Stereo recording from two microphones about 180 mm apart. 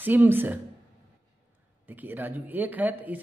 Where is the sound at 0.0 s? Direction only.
10° right (ahead or behind).